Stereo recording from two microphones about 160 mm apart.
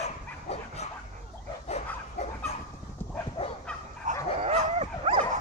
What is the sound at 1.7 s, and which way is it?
Dog, 40° left (ahead or behind).